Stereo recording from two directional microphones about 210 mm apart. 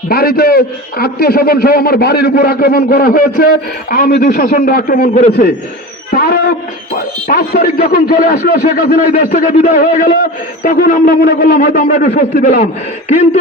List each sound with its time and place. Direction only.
0.1 s a man's voice: 45° left (ahead or behind)
6.1 s a sound: 45° left (ahead or behind)
7.3 s a man's voice: 45° left (ahead or behind)